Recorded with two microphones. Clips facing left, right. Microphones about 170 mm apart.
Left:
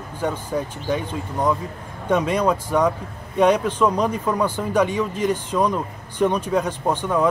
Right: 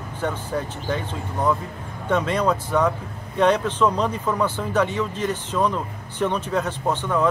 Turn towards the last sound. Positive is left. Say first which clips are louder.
# left 2 dB
turn(degrees=15)  # may be behind; listen again after turning